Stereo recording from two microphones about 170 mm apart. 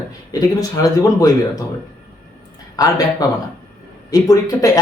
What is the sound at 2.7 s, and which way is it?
Speech, 20° left (ahead or behind).